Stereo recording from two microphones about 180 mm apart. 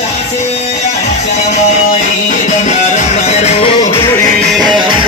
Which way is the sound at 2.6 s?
40° left (ahead or behind).